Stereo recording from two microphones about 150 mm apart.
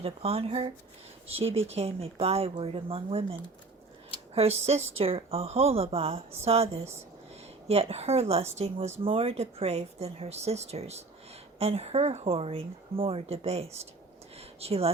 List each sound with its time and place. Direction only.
0.0 s speech: 40° right (ahead or behind)
4.4 s speech: 45° right (ahead or behind)